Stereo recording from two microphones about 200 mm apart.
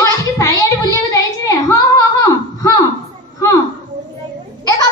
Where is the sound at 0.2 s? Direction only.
15° left (ahead or behind).